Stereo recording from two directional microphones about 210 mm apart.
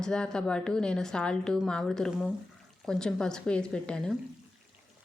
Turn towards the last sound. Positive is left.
turn(degrees=5)  # may be behind; listen again after turning